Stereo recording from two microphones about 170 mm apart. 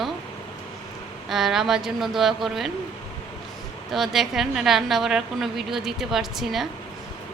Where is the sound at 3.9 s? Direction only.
Centre (ahead or behind).